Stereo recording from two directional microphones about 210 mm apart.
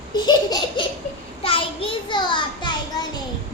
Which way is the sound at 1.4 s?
25° left (ahead or behind).